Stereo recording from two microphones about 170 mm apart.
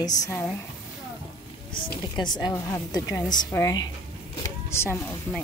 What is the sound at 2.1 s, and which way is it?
A woman's voice, 25° left (ahead or behind).